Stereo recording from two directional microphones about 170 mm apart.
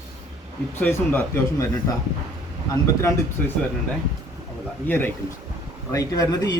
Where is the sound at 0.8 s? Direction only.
10° left (ahead or behind).